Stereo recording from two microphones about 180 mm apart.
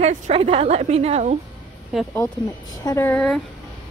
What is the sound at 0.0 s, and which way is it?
A woman's voice, 35° right (ahead or behind).